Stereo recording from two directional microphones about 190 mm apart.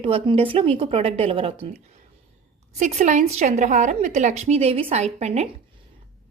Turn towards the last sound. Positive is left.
turn(degrees=-35)  # may be behind; listen again after turning